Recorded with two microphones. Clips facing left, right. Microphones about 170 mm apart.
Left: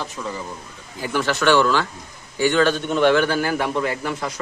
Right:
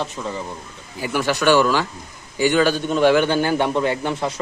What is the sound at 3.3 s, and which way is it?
A man's voice, 25° right (ahead or behind).